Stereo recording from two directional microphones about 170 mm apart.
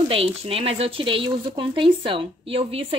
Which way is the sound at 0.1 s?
35° right (ahead or behind).